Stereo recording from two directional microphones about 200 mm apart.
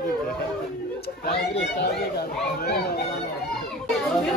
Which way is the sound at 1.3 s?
55° left (ahead or behind).